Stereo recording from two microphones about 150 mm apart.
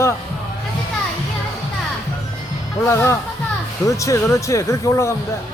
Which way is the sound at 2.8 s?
20° left (ahead or behind).